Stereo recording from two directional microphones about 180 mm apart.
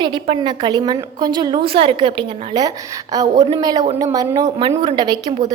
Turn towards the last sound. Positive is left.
turn(degrees=-25)  # may be behind; listen again after turning